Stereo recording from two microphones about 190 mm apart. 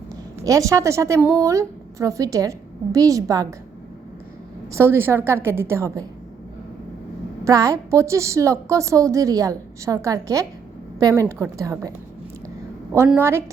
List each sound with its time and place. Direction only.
0.4 s a woman's voice: 15° right (ahead or behind)
4.7 s a woman's voice: 15° right (ahead or behind)
7.4 s a woman's voice: 15° right (ahead or behind)
13.1 s a woman's voice: 10° right (ahead or behind)